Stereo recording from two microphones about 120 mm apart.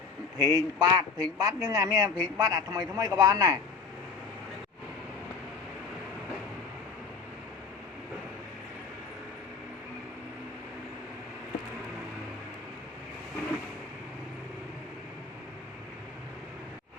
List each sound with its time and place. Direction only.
0.3 s a man's voice: 30° right (ahead or behind)